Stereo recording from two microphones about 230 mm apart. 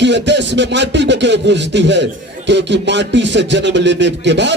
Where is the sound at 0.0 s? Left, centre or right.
Right.